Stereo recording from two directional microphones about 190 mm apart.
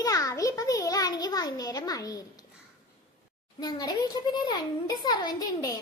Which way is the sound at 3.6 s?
20° left (ahead or behind).